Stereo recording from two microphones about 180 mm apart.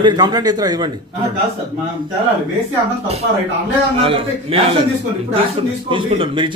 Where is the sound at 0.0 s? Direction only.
25° right (ahead or behind).